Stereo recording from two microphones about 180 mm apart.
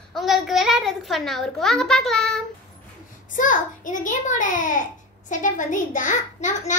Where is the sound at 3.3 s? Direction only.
45° left (ahead or behind).